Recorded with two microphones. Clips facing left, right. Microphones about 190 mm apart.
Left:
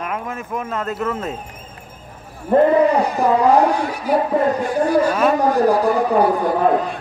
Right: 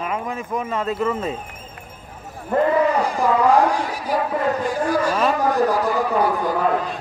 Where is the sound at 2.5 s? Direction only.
25° left (ahead or behind).